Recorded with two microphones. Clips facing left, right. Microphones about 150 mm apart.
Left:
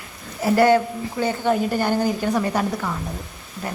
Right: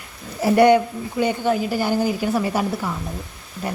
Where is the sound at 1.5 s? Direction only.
5° right (ahead or behind).